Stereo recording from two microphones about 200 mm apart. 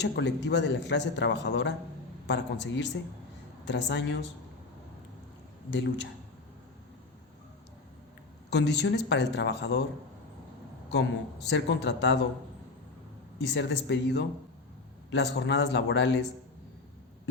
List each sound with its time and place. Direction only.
0.0 s a man's voice: 60° left (ahead or behind)
8.4 s a man's voice: 60° left (ahead or behind)
10.9 s a man's voice: 60° left (ahead or behind)
13.5 s a man's voice: 60° left (ahead or behind)